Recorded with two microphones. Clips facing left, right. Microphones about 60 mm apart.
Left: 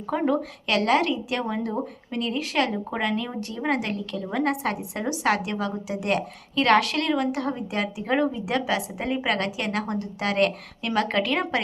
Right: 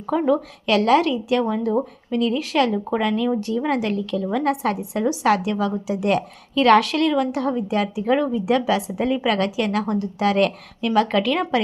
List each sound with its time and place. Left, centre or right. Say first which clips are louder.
0.1 s a woman's voice: right 4 dB; left
3.5 s a woman's voice: right 5 dB; left
8.4 s a woman's voice: right 7 dB; centre
8.7 s a woman's voice: right 5 dB; centre